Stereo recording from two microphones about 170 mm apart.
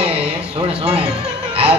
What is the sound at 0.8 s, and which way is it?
Speech, 35° right (ahead or behind).